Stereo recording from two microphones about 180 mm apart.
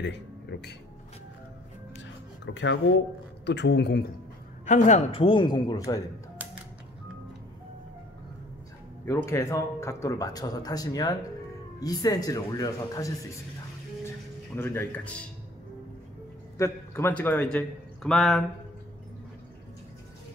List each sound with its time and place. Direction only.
0.0 s speech: 75° left (ahead or behind)
2.0 s a sound: 85° left
3.4 s speech: 70° left (ahead or behind)
4.6 s speech: 40° left (ahead or behind); by 6.0 s 20° left (ahead or behind)
9.0 s speech: 15° left (ahead or behind)
16.5 s a man's voice: 15° left (ahead or behind)